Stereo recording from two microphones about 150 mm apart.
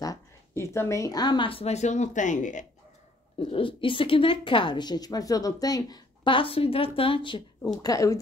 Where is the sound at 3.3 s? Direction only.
35° left (ahead or behind).